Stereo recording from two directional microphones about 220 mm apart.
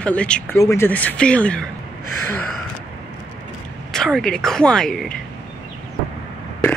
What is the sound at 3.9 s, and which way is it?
Speech, centre (ahead or behind).